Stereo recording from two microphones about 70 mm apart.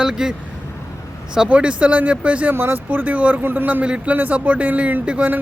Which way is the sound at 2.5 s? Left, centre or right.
Right.